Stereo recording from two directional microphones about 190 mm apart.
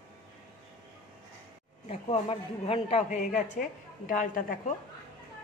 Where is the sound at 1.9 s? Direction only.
30° left (ahead or behind).